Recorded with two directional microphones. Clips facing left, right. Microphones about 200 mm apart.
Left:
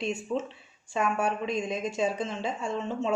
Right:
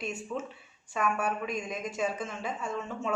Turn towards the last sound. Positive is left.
turn(degrees=30)  # may be behind; listen again after turning